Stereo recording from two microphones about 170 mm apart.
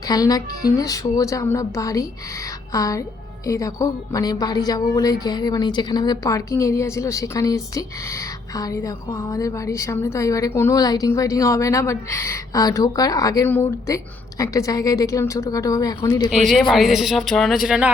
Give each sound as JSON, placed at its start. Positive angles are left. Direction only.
{"t": 0.1, "sound": "speech", "side_deg": 20}
{"t": 16.5, "sound": "speech", "side_deg": 0}